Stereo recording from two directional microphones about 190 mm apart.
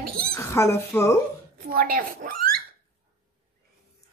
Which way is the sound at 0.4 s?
15° left (ahead or behind).